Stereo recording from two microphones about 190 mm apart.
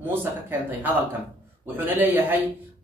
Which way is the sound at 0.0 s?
10° right (ahead or behind).